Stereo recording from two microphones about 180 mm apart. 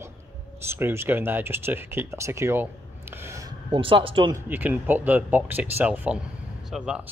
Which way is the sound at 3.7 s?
30° right (ahead or behind).